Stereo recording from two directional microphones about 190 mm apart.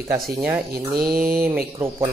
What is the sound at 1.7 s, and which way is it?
Speech, 15° right (ahead or behind).